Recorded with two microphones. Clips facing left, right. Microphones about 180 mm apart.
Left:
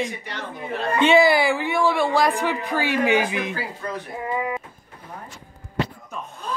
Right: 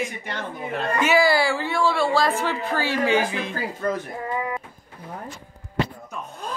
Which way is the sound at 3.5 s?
45° right (ahead or behind).